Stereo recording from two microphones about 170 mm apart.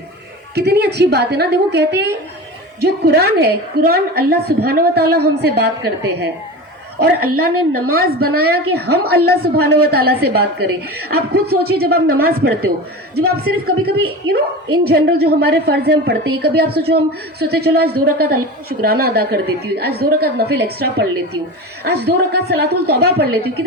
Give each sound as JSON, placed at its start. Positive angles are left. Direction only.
{"t": 0.5, "sound": "a woman's voice", "side_deg": -70}
{"t": 7.0, "sound": "a woman's voice", "side_deg": -60}